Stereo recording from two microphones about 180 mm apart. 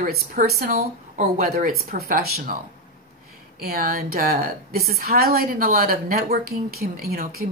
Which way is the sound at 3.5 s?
60° right (ahead or behind).